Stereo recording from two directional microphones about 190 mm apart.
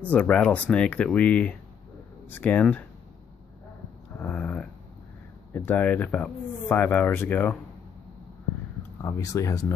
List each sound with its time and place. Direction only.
0.1 s speech: 5° left (ahead or behind)
4.2 s speech: 5° left (ahead or behind)
9.0 s speech: 15° left (ahead or behind)